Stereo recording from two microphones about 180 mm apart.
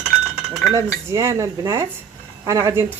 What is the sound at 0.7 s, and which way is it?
A woman's voice, 15° right (ahead or behind).